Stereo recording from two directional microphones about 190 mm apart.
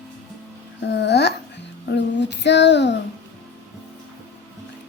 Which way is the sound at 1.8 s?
65° left (ahead or behind).